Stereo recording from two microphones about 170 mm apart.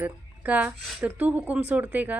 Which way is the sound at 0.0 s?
10° right (ahead or behind).